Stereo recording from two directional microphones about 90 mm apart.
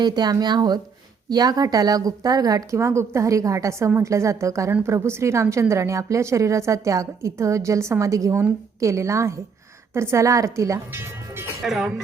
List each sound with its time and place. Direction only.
0.0 s a woman's voice: 50° right (ahead or behind); by 11.4 s 30° right (ahead or behind)
11.6 s speech: centre (ahead or behind)